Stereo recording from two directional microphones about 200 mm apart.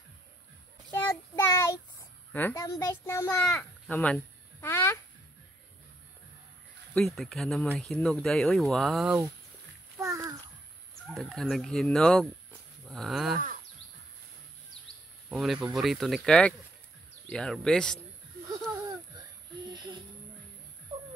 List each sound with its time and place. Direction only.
0.9 s child singing: 15° left (ahead or behind)
2.3 s speech: 10° left (ahead or behind)
3.4 s a sound: 5° left (ahead or behind)
6.9 s speech: centre (ahead or behind)
9.9 s a sound: 15° right (ahead or behind)
11.1 s speech: centre (ahead or behind)
12.8 s livestock: centre (ahead or behind)
15.2 s speech: centre (ahead or behind)
18.7 s a sound: 15° right (ahead or behind)